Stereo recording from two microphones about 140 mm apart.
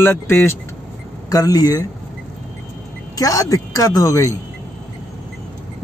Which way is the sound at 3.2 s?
25° left (ahead or behind).